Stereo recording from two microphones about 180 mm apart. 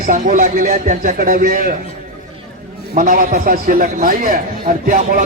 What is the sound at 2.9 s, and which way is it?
A man's voice, 50° right (ahead or behind).